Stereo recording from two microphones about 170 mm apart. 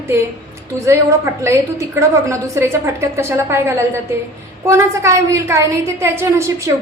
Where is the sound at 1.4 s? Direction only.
15° right (ahead or behind).